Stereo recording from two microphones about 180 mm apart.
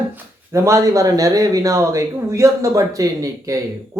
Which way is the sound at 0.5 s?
15° right (ahead or behind).